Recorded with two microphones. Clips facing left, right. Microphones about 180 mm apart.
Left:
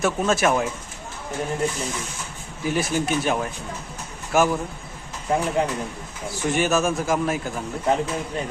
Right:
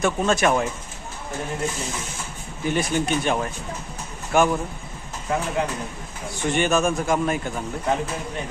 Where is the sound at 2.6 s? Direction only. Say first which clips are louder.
Even; 5° left (ahead or behind).